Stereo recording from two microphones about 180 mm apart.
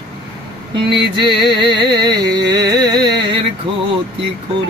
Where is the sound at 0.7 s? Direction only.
30° right (ahead or behind).